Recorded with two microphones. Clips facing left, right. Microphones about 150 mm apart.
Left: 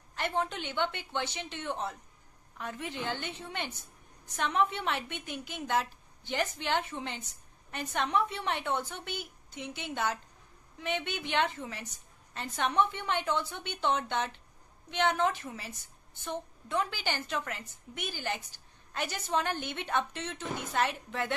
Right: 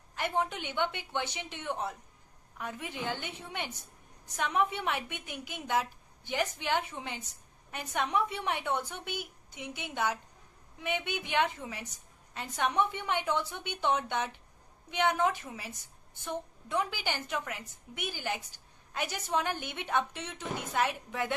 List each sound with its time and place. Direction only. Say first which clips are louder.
0.1 s a woman's voice: even; 10° right (ahead or behind)